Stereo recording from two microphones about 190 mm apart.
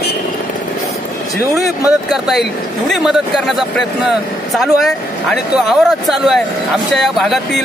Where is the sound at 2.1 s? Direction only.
Centre (ahead or behind).